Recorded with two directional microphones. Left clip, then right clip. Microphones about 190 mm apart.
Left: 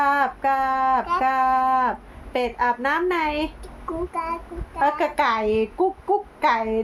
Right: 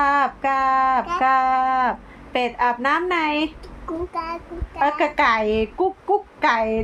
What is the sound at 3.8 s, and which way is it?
Speech, 15° left (ahead or behind).